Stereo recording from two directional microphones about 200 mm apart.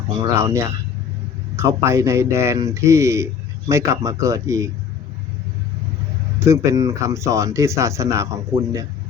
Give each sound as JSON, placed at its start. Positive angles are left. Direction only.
{"t": 0.3, "sound": "speech", "side_deg": -15}
{"t": 6.4, "sound": "speech", "side_deg": -15}